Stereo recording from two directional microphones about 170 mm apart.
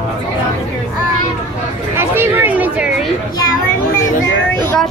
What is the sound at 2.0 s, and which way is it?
Chatter, 15° right (ahead or behind).